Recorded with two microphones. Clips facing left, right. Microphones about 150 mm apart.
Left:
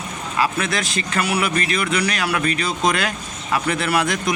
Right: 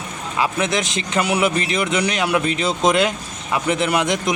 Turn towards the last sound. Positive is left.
turn(degrees=-20)  # may be behind; listen again after turning